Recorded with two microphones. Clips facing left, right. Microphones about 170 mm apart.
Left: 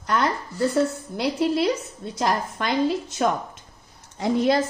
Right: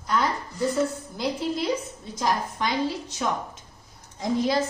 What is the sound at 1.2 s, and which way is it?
A woman's voice, 70° left (ahead or behind).